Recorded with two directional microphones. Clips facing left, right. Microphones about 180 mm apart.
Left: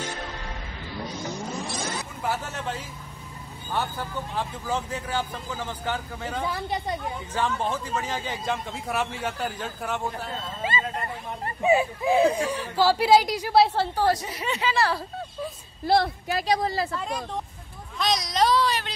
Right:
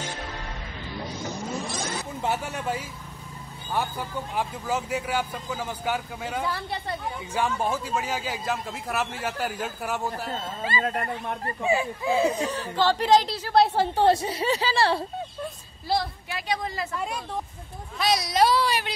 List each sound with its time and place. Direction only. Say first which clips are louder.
2.2 s speech: right 2 dB; 15° right (ahead or behind)
6.4 s speech: left 2 dB; 15° left (ahead or behind)
7.3 s speech: right 1 dB; 10° right (ahead or behind)
11.6 s speech: left 4 dB; 20° left (ahead or behind)
13.9 s speech: right 3 dB; 25° right (ahead or behind)
15.8 s a woman's voice: left 5 dB; 60° left (ahead or behind)
16.3 s a woman's voice: left 6 dB; 40° left (ahead or behind)
17.9 s speech: right 2 dB; 5° right (ahead or behind)